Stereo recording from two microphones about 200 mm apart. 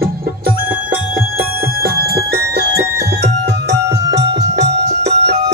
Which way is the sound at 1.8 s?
50° right (ahead or behind).